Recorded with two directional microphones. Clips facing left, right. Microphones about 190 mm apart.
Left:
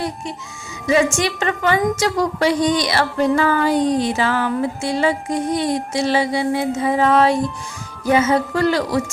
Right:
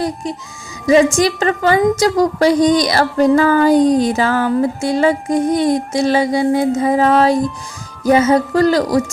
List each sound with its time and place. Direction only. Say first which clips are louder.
0.9 s a woman's voice: right 6 dB; 35° right (ahead or behind)